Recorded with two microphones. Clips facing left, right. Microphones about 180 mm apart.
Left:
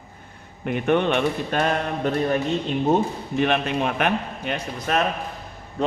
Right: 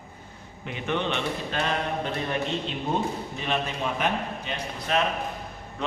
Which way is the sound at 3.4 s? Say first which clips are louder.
Left 8 dB; 65° left (ahead or behind).